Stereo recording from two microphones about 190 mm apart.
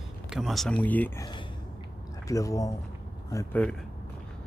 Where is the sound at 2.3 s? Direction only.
15° left (ahead or behind).